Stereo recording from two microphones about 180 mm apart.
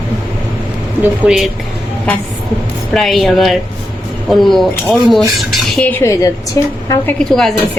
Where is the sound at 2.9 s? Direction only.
Centre (ahead or behind); by 6.7 s 20° left (ahead or behind).